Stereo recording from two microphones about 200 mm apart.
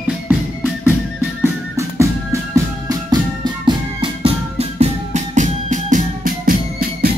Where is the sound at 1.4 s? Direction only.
15° right (ahead or behind).